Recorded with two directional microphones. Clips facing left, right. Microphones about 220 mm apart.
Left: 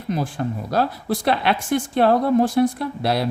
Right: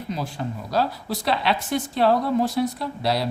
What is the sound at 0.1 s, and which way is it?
Speech, 50° left (ahead or behind).